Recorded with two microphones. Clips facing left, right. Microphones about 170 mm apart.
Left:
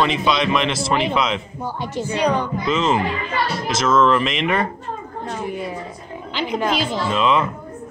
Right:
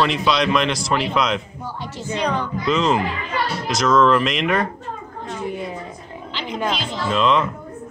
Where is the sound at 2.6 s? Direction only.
Centre (ahead or behind).